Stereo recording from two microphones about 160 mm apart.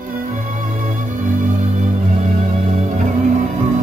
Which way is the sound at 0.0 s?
60° right (ahead or behind).